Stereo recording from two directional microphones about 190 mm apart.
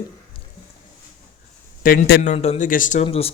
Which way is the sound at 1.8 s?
50° left (ahead or behind).